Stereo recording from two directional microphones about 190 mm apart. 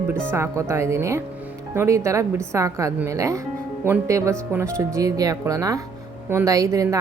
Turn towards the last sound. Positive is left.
turn(degrees=-15)  # may be behind; listen again after turning